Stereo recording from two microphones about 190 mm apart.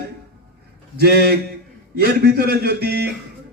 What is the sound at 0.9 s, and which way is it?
A man's voice, 55° right (ahead or behind).